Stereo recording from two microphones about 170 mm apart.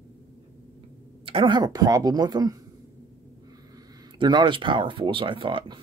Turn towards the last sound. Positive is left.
turn(degrees=-30)  # may be behind; listen again after turning